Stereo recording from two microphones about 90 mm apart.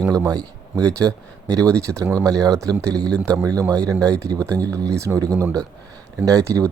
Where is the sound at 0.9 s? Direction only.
40° right (ahead or behind).